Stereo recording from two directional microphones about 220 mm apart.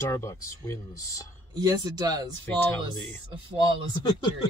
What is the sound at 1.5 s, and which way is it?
Speech, 20° right (ahead or behind).